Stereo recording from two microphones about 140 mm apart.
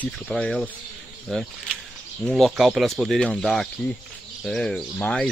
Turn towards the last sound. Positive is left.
turn(degrees=5)  # may be behind; listen again after turning